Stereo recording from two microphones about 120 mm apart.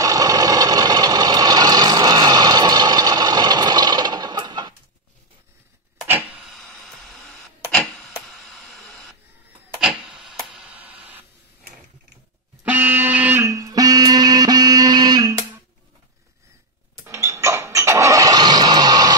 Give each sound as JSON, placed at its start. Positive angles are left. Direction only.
{"t": 0.0, "sound": "engine", "side_deg": -30}
{"t": 6.0, "sound": "printer", "side_deg": -15}
{"t": 6.4, "sound": "a sound", "side_deg": 0}
{"t": 10.3, "sound": "tick", "side_deg": 0}
{"t": 12.6, "sound": "music", "side_deg": -15}
{"t": 13.4, "sound": "music", "side_deg": -25}
{"t": 17.0, "sound": "engine starting", "side_deg": -25}